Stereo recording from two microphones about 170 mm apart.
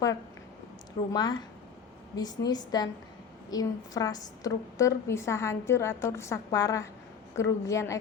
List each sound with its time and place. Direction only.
1.1 s a woman's voice: 25° left (ahead or behind)